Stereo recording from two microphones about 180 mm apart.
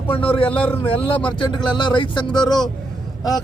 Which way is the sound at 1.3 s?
25° left (ahead or behind).